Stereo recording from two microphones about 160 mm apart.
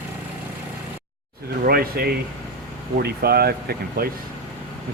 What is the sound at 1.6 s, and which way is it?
Speech, 70° right (ahead or behind).